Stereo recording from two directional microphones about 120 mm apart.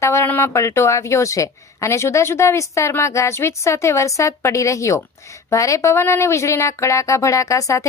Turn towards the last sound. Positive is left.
turn(degrees=25)  # may be behind; listen again after turning